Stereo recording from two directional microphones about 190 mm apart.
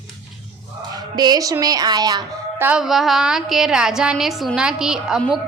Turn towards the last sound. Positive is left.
turn(degrees=0)  # may be behind; listen again after turning